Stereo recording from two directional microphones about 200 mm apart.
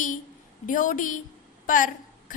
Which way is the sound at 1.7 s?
40° left (ahead or behind).